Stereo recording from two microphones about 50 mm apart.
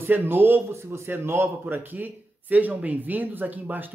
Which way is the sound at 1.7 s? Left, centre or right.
Right.